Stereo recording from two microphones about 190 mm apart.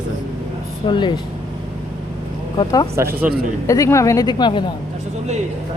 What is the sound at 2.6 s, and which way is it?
Speech, 20° left (ahead or behind).